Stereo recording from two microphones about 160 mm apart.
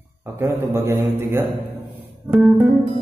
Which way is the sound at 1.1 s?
15° right (ahead or behind).